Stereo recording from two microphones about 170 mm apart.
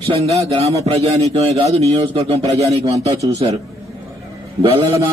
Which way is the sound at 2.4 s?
20° right (ahead or behind).